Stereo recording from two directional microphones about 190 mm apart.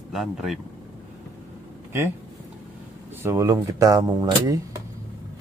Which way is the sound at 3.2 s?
15° right (ahead or behind).